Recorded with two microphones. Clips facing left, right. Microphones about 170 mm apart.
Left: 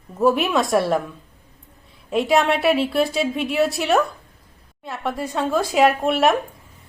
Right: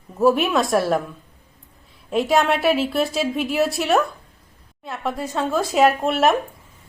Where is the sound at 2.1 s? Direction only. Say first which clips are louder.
Even; centre (ahead or behind).